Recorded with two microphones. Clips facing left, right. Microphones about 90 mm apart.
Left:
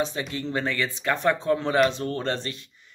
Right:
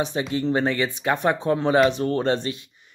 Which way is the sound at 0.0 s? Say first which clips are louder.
Right 4 dB; 20° right (ahead or behind).